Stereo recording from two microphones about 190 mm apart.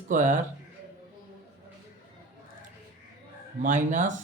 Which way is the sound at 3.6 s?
40° right (ahead or behind).